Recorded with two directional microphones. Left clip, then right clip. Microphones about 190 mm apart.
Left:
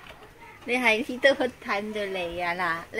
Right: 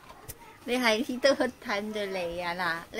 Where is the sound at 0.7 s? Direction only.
15° right (ahead or behind); by 2.8 s 5° left (ahead or behind).